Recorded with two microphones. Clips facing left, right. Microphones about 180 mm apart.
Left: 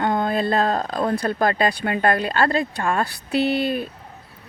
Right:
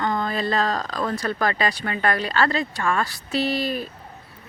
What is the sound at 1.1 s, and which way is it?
Speech, 55° left (ahead or behind).